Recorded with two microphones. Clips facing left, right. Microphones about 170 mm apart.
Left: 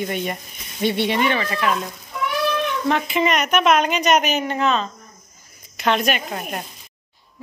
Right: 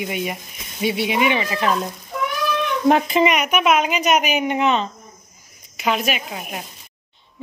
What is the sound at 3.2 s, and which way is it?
Speech, 10° right (ahead or behind).